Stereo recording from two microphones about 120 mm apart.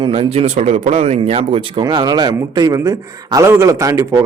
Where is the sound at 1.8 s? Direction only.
35° right (ahead or behind).